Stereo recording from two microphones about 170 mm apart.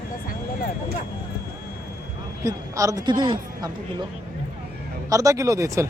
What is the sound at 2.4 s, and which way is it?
A woman's voice, 20° right (ahead or behind).